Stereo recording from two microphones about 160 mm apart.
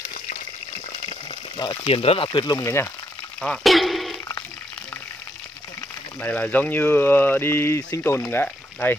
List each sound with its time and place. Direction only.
1.6 s speech: 30° left (ahead or behind)
3.3 s a sound: centre (ahead or behind)
6.2 s speech: 10° left (ahead or behind)